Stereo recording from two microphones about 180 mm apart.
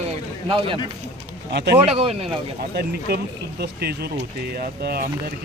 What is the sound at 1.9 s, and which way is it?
Speech, 35° right (ahead or behind).